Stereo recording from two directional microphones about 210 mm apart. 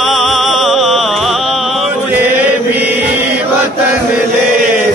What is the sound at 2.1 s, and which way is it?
Chant, 5° right (ahead or behind).